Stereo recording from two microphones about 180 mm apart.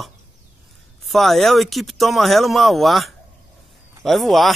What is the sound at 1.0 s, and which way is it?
Speech, centre (ahead or behind).